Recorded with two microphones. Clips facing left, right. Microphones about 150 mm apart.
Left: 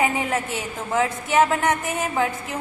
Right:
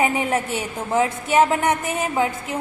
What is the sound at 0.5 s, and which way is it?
A woman's voice, 20° right (ahead or behind).